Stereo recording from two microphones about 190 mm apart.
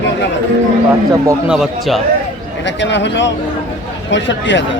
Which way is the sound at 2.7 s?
70° left (ahead or behind).